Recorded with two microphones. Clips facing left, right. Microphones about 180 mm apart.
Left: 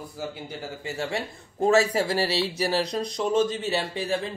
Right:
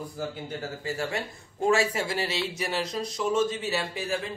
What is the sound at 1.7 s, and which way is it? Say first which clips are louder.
Speech: left 4 dB; 35° left (ahead or behind).